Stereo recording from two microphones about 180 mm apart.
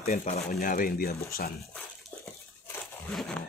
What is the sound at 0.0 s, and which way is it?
Speech, 45° left (ahead or behind).